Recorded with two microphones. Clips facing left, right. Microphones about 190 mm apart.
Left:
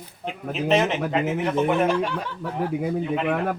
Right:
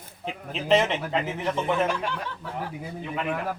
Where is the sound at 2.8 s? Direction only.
60° left (ahead or behind).